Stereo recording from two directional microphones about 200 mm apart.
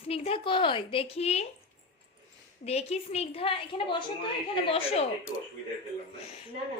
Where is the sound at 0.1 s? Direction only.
30° left (ahead or behind).